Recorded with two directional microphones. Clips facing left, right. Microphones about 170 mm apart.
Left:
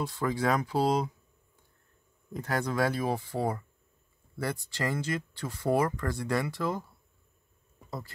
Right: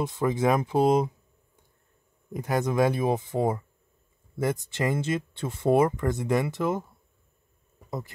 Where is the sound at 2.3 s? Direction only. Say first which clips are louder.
Right 5 dB; 15° right (ahead or behind).